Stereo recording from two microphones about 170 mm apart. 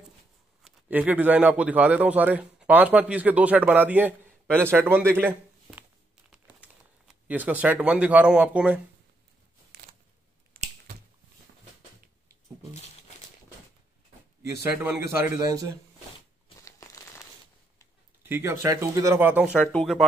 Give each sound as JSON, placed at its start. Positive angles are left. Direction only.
{"t": 0.7, "sound": "a man's voice", "side_deg": -10}
{"t": 5.1, "sound": "a sound", "side_deg": -10}
{"t": 6.3, "sound": "crumpling", "side_deg": -5}
{"t": 10.6, "sound": "squish", "side_deg": -70}
{"t": 14.6, "sound": "a man's voice", "side_deg": -15}
{"t": 16.6, "sound": "crumpling", "side_deg": 20}
{"t": 18.2, "sound": "a man's voice", "side_deg": -15}
{"t": 19.6, "sound": "speech", "side_deg": 5}